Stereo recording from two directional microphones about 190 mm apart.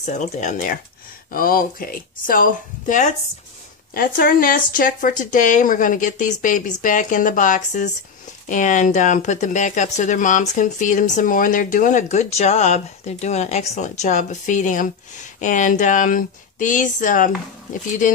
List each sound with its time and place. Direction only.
0.0 s speech: 35° left (ahead or behind)